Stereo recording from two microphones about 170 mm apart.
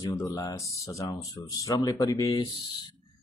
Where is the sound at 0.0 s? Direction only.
20° left (ahead or behind).